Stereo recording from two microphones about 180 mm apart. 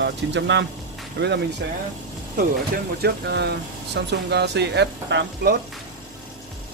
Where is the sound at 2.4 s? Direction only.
60° right (ahead or behind); by 5.5 s 75° right (ahead or behind).